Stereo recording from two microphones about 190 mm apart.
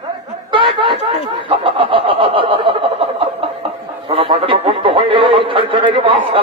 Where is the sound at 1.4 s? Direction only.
25° right (ahead or behind).